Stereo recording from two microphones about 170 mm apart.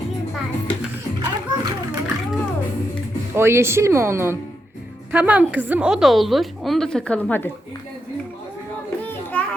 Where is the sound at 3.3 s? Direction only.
15° right (ahead or behind); by 7.5 s 10° left (ahead or behind).